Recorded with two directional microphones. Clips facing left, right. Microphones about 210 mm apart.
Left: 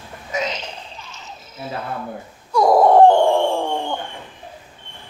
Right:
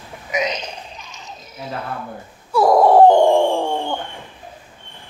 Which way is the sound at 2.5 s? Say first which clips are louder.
Right 1 dB; centre (ahead or behind).